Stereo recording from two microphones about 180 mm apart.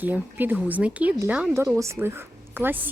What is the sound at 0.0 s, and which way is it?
A woman's voice, 10° right (ahead or behind).